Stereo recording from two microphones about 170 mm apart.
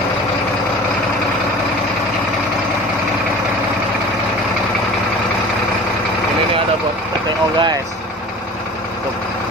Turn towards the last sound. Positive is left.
turn(degrees=-25)  # may be behind; listen again after turning